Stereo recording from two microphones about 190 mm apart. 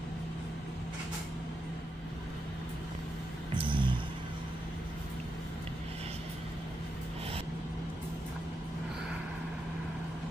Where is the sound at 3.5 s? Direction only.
25° right (ahead or behind).